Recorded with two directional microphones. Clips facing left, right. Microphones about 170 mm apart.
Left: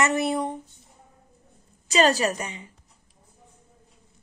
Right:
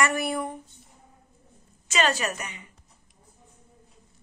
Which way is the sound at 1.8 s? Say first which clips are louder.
Left 5 dB; 35° left (ahead or behind).